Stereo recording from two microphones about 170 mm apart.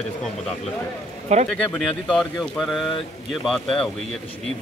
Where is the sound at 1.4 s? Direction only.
5° left (ahead or behind).